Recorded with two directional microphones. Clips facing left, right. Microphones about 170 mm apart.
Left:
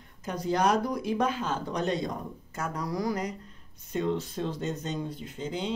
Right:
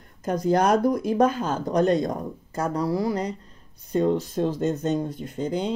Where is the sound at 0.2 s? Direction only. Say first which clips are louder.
Right 6 dB; 45° right (ahead or behind).